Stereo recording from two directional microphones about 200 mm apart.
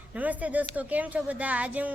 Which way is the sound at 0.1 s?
5° right (ahead or behind).